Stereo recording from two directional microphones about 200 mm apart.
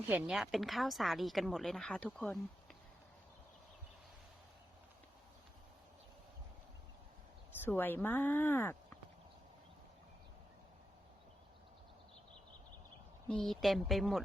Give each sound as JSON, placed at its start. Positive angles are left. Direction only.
{"t": 0.1, "sound": "speech", "side_deg": -5}
{"t": 7.6, "sound": "speech", "side_deg": 10}
{"t": 13.2, "sound": "speech", "side_deg": 0}